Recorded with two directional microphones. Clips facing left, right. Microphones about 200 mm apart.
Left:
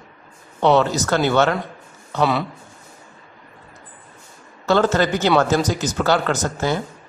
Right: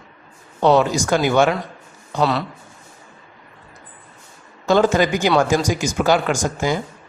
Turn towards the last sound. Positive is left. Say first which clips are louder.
# right 1 dB
turn(degrees=-15)  # may be behind; listen again after turning